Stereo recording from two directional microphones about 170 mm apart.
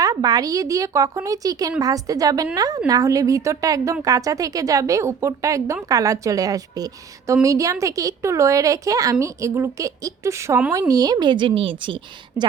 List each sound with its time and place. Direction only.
0.0 s a woman's voice: 20° right (ahead or behind)
12.4 s a woman's voice: 15° right (ahead or behind)